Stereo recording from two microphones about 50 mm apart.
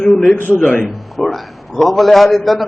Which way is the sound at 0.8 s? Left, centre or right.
Centre.